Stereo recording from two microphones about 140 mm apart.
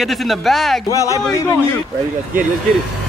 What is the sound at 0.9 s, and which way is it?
Speech, 20° left (ahead or behind).